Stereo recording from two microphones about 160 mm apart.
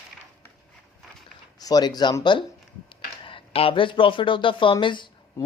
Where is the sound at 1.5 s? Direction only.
25° left (ahead or behind).